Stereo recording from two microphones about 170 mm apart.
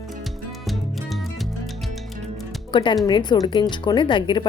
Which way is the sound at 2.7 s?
30° left (ahead or behind).